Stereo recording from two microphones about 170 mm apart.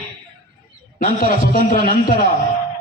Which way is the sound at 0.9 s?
55° left (ahead or behind).